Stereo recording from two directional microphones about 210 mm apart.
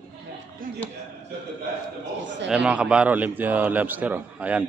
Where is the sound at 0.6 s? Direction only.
40° right (ahead or behind).